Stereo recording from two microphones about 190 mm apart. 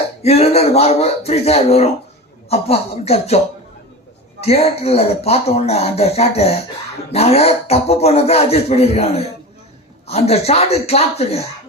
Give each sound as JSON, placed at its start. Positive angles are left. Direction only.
{"t": 0.2, "sound": "speech", "side_deg": 35}